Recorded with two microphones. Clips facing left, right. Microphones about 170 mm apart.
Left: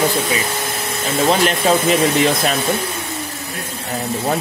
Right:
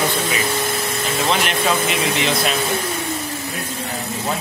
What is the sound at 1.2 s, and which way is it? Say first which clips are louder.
Speech: left 5 dB; 40° left (ahead or behind).